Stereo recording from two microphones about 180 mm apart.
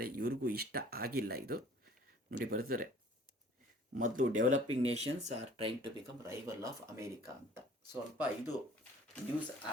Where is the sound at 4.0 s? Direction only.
45° right (ahead or behind); by 5.9 s 30° right (ahead or behind).